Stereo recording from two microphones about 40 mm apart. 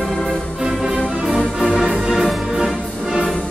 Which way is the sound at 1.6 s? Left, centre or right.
Right.